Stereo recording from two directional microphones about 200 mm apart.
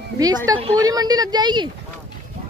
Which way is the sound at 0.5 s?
25° right (ahead or behind).